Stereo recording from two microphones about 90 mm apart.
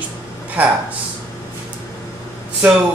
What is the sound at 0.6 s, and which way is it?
Speech, 20° right (ahead or behind).